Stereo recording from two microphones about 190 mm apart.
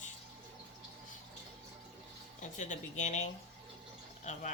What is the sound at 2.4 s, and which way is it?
Speech, 40° left (ahead or behind).